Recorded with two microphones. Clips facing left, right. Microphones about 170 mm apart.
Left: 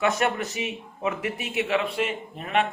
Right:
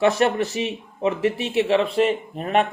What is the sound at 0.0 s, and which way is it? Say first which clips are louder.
Speech: right 6 dB; 30° right (ahead or behind).